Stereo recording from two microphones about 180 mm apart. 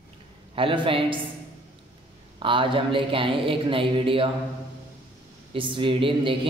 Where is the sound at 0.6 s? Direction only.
30° right (ahead or behind).